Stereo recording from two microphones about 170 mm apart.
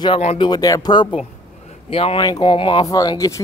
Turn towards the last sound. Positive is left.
turn(degrees=20)  # may be behind; listen again after turning